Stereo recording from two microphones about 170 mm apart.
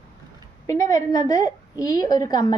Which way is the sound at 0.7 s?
20° left (ahead or behind).